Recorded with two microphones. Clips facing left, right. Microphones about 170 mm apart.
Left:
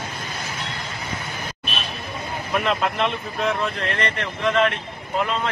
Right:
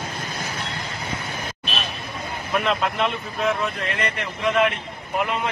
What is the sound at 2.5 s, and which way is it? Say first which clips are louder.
Speech: even; centre (ahead or behind).